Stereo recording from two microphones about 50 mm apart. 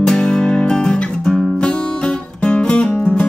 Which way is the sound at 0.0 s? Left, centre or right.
Centre.